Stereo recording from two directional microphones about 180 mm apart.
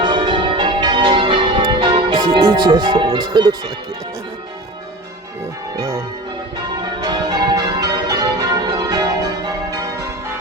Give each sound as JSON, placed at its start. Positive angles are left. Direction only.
{"t": 0.0, "sound": "change ringing", "side_deg": -25}
{"t": 5.7, "sound": "speech", "side_deg": -15}
{"t": 7.0, "sound": "change ringing", "side_deg": -25}